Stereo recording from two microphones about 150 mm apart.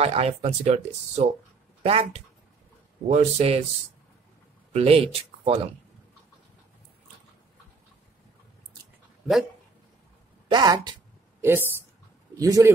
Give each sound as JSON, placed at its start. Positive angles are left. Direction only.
{"t": 0.0, "sound": "speech", "side_deg": -40}
{"t": 4.7, "sound": "speech", "side_deg": -40}
{"t": 10.5, "sound": "speech", "side_deg": -30}
{"t": 11.4, "sound": "speech", "side_deg": -15}